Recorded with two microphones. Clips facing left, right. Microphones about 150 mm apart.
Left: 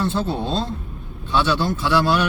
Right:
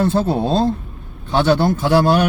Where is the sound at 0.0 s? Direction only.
50° right (ahead or behind).